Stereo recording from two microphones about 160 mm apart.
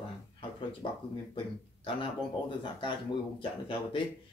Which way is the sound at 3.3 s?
30° left (ahead or behind).